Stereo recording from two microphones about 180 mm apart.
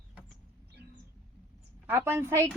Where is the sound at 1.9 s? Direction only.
15° right (ahead or behind).